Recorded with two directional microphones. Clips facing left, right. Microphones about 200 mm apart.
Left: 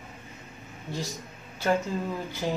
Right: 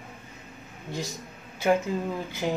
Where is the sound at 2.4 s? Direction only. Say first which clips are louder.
Right 2 dB; 15° right (ahead or behind).